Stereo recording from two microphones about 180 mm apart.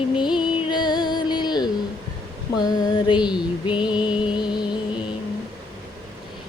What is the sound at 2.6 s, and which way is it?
Female singing, 25° left (ahead or behind).